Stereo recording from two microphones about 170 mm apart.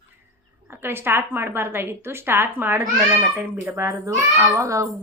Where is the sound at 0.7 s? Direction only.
15° right (ahead or behind).